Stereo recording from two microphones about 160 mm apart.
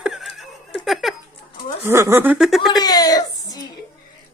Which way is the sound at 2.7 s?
25° left (ahead or behind).